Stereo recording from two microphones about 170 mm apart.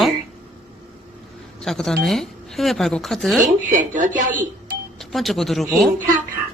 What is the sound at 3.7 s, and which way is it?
Speech, 50° right (ahead or behind).